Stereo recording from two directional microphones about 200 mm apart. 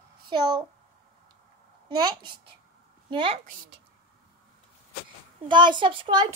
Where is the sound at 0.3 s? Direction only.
20° right (ahead or behind).